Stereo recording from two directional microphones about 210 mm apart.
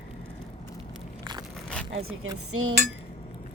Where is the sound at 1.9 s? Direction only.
80° right.